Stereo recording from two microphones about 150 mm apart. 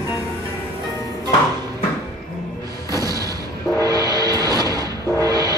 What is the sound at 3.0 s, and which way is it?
Artillery fire, 25° right (ahead or behind).